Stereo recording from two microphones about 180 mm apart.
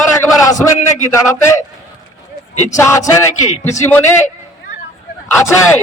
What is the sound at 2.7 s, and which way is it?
Speech, 15° left (ahead or behind).